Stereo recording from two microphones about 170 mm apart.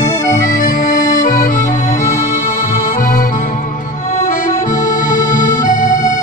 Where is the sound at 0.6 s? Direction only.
50° left (ahead or behind).